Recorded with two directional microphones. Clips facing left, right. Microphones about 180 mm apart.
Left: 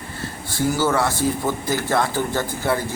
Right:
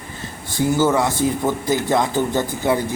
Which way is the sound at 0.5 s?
15° right (ahead or behind).